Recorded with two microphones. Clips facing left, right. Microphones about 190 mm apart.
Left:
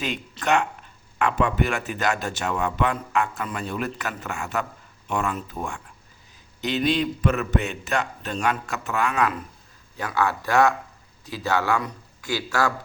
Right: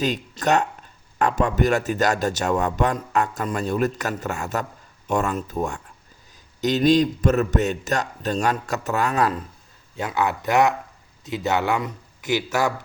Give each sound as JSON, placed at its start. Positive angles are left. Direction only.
{"t": 0.0, "sound": "a man's voice", "side_deg": -40}
{"t": 10.0, "sound": "speech", "side_deg": -20}